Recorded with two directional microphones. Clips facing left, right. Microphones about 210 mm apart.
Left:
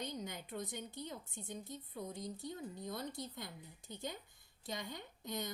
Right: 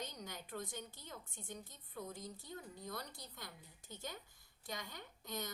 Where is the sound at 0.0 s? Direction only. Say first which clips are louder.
Left 4 dB; 20° left (ahead or behind).